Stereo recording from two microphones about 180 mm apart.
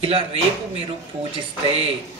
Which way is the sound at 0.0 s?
30° right (ahead or behind).